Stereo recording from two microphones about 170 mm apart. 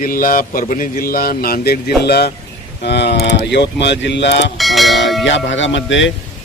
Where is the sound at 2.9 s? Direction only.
80° left.